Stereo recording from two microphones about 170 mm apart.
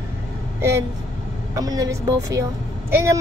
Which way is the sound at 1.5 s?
20° right (ahead or behind).